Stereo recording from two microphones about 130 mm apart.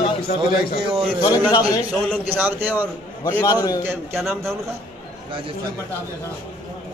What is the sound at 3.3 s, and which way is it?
Speech, 25° left (ahead or behind).